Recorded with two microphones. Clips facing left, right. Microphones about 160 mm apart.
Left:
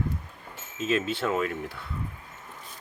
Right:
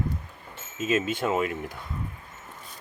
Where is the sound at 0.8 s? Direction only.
15° right (ahead or behind).